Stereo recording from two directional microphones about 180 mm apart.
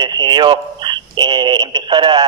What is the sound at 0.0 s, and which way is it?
Speech, 25° right (ahead or behind).